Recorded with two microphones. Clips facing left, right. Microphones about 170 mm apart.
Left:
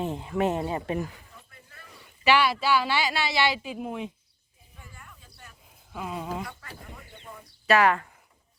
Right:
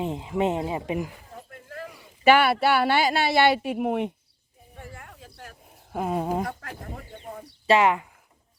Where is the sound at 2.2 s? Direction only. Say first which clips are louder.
Right 5 dB; 50° right (ahead or behind).